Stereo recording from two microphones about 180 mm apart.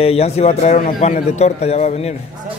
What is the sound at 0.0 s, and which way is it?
Speech, 35° left (ahead or behind).